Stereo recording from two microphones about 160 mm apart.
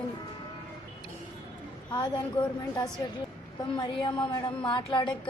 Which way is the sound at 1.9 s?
30° left (ahead or behind).